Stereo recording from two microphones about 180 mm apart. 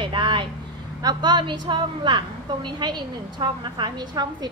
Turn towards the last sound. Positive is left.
turn(degrees=-25)  # may be behind; listen again after turning